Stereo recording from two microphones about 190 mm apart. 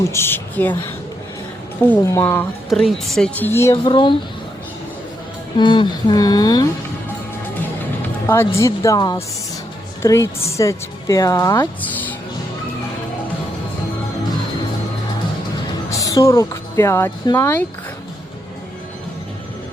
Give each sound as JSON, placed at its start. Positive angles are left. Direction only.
{"t": 0.0, "sound": "speech", "side_deg": 15}
{"t": 1.9, "sound": "speech", "side_deg": 15}
{"t": 2.6, "sound": "speech", "side_deg": 0}
{"t": 5.5, "sound": "speech", "side_deg": 25}
{"t": 8.3, "sound": "speech", "side_deg": 15}
{"t": 11.8, "sound": "speech", "side_deg": 10}
{"t": 15.9, "sound": "speech", "side_deg": 15}